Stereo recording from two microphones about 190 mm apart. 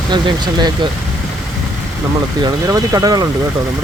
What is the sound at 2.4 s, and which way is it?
Speech, 15° right (ahead or behind).